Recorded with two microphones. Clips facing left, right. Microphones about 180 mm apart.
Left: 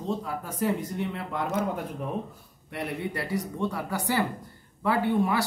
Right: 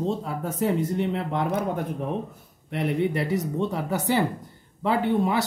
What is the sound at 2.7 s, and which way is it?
Speech, 20° right (ahead or behind).